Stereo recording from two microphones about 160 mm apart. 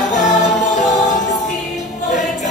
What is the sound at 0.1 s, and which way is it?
Music, 50° left (ahead or behind).